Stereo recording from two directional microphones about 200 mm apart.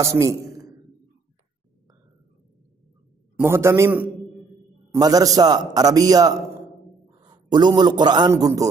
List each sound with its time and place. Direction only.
0.0 s a man's voice: 15° right (ahead or behind)
3.3 s a man's voice: 10° right (ahead or behind)